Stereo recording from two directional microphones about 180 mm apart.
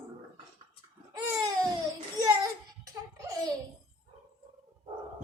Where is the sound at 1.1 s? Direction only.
20° right (ahead or behind).